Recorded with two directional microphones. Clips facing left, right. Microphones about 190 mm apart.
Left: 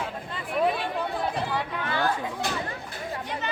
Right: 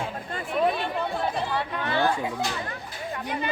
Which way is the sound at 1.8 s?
25° right (ahead or behind).